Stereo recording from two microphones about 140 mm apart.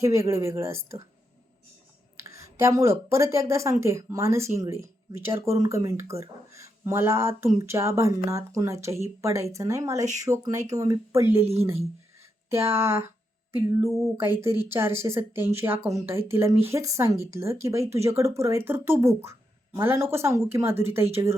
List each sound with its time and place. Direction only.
0.0 s speech: 20° right (ahead or behind)
2.1 s speech: 20° right (ahead or behind)
12.5 s speech: 20° right (ahead or behind)